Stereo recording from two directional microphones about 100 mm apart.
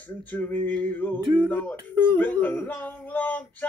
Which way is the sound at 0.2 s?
15° left (ahead or behind).